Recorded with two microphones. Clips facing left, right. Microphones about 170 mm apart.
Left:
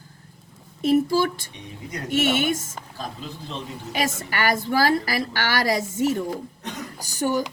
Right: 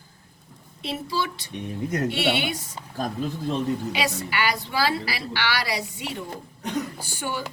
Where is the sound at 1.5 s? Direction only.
50° right (ahead or behind).